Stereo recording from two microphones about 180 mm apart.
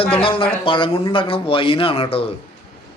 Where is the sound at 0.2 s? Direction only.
30° left (ahead or behind).